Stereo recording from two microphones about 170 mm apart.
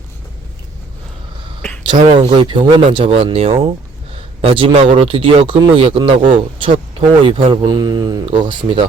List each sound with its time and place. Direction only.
1.8 s speech: 30° right (ahead or behind)